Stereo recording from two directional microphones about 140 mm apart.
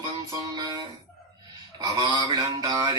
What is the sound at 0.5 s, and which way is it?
Music, 30° right (ahead or behind).